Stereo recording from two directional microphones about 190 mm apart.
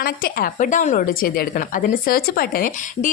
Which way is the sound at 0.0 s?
50° left (ahead or behind).